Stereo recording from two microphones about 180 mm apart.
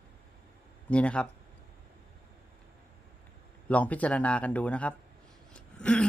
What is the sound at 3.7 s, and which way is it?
Speech, 10° left (ahead or behind).